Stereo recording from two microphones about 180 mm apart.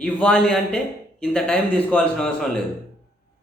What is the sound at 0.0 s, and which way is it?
A man's voice, 5° left (ahead or behind).